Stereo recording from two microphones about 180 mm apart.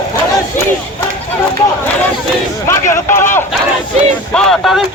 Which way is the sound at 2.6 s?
15° left (ahead or behind).